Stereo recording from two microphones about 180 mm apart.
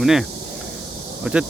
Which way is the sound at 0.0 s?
Centre (ahead or behind).